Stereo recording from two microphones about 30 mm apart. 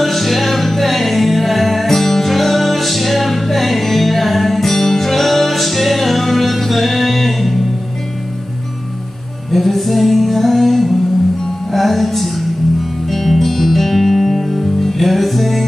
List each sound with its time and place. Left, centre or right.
0.0 s music: centre
9.5 s music: centre